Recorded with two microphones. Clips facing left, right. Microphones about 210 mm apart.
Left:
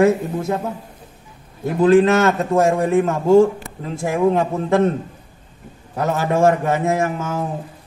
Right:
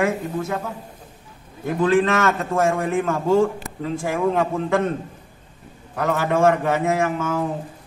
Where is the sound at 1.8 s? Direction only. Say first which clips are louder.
Left 5 dB; 30° left (ahead or behind).